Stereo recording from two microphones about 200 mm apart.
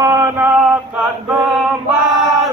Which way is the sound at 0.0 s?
15° right (ahead or behind).